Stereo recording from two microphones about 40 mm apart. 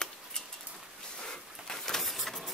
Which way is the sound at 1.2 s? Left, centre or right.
Centre.